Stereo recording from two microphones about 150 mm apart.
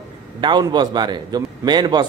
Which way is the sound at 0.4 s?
30° right (ahead or behind).